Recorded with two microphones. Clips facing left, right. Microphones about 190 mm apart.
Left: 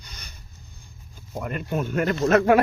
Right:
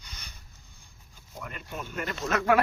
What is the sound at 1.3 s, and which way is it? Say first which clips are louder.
Speech: left 11 dB; 60° left (ahead or behind).